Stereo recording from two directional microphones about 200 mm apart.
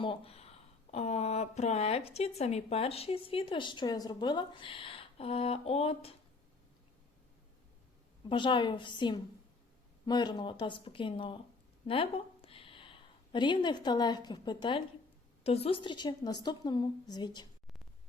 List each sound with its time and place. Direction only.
0.0 s speech: 30° left (ahead or behind)
8.3 s a woman's voice: 25° left (ahead or behind)